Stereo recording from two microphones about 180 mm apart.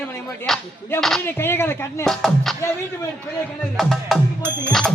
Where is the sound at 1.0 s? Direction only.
Centre (ahead or behind).